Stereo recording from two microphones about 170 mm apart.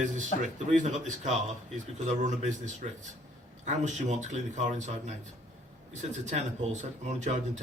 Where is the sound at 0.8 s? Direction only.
45° right (ahead or behind).